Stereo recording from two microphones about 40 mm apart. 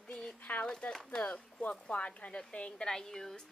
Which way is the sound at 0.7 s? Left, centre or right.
Centre.